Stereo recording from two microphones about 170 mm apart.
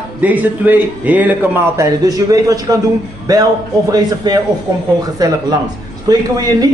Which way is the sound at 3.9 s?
25° right (ahead or behind).